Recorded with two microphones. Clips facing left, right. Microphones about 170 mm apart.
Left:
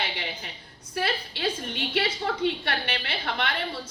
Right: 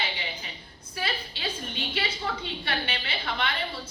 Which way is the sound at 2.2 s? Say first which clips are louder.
Left 6 dB; 70° left (ahead or behind).